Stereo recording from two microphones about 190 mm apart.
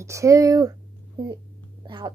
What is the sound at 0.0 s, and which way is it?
A woman's voice, 15° right (ahead or behind).